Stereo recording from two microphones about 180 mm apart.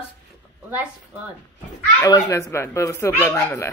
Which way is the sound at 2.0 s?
15° left (ahead or behind).